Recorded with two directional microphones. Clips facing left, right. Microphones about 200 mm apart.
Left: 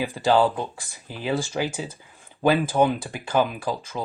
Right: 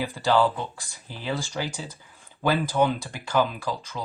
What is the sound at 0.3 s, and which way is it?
Speech, 20° left (ahead or behind).